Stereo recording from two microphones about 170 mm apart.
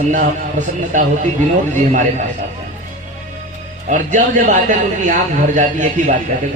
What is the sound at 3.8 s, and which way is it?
A man's voice, 45° right (ahead or behind).